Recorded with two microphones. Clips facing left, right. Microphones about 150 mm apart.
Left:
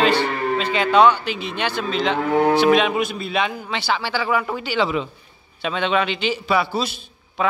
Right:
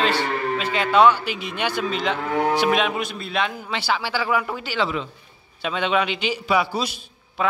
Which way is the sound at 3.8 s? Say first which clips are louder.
Left 1 dB; 5° right (ahead or behind).